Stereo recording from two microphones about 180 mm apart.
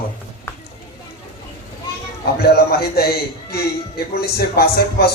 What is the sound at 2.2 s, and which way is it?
A man's voice, 60° left (ahead or behind).